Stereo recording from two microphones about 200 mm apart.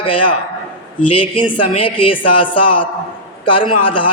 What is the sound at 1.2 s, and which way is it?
Speech, 25° left (ahead or behind).